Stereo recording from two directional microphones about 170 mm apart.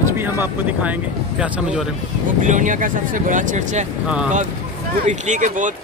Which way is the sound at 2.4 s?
45° right (ahead or behind).